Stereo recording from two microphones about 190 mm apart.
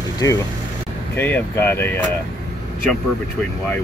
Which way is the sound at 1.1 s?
10° left (ahead or behind).